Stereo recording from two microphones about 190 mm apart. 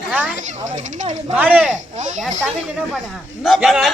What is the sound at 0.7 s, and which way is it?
Speech, 40° right (ahead or behind).